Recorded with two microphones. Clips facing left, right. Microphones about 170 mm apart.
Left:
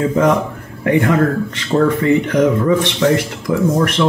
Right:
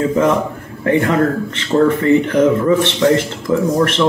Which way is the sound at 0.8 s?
15° left (ahead or behind).